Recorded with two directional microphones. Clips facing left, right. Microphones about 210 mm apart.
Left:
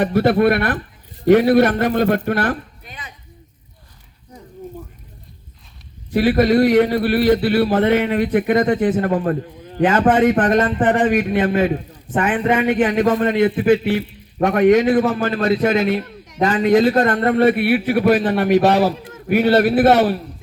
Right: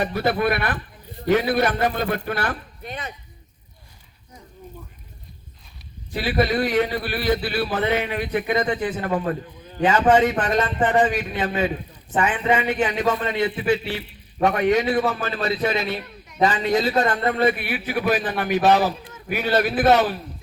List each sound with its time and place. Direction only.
0.2 s a man's voice: 65° left (ahead or behind)
6.1 s a man's voice: 60° left (ahead or behind)